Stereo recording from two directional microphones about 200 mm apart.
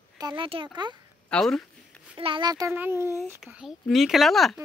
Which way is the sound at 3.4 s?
Centre (ahead or behind).